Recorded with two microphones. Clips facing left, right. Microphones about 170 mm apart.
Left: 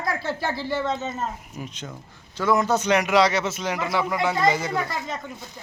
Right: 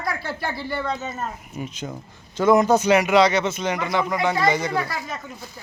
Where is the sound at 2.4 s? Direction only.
20° right (ahead or behind).